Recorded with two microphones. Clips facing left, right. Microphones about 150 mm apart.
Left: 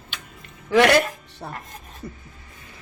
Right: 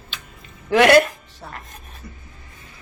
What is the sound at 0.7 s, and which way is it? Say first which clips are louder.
Speech: right 3 dB; 5° right (ahead or behind).